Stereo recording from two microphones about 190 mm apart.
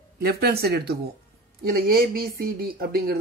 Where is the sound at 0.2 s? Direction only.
55° right (ahead or behind).